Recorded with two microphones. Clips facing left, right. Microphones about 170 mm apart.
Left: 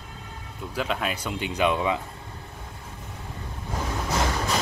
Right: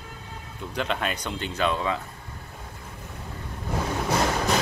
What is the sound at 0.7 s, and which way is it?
Speech, 5° left (ahead or behind).